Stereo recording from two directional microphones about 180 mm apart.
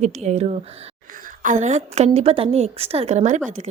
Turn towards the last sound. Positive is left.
turn(degrees=-40)  # may be behind; listen again after turning